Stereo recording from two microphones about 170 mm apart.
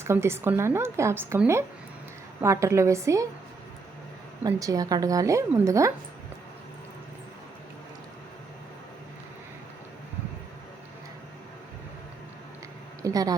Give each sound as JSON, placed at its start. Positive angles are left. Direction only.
{"t": 0.0, "sound": "a woman's voice", "side_deg": -15}
{"t": 4.4, "sound": "a woman's voice", "side_deg": -20}
{"t": 13.0, "sound": "a sound", "side_deg": -20}